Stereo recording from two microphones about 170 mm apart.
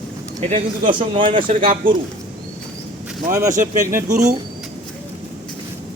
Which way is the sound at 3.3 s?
20° right (ahead or behind).